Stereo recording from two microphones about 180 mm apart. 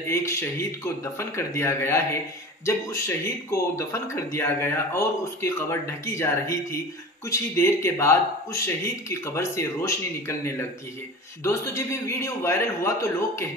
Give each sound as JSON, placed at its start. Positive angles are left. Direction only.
{"t": 0.1, "sound": "speech", "side_deg": 15}